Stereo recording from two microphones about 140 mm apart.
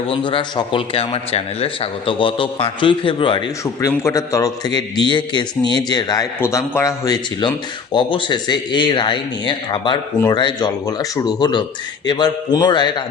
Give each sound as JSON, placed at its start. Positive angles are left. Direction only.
{"t": 0.1, "sound": "a man's voice", "side_deg": 40}
{"t": 3.8, "sound": "a man's voice", "side_deg": 20}